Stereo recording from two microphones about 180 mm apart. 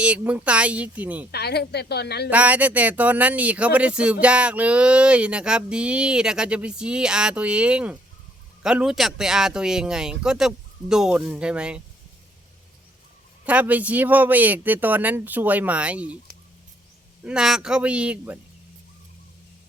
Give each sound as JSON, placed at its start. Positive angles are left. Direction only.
{"t": 0.0, "sound": "speech", "side_deg": -10}
{"t": 1.3, "sound": "a woman's voice", "side_deg": 65}
{"t": 2.3, "sound": "speech", "side_deg": -10}
{"t": 13.4, "sound": "speech", "side_deg": -10}
{"t": 17.2, "sound": "speech", "side_deg": -5}